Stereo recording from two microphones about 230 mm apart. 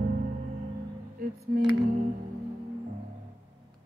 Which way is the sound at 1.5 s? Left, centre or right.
Right.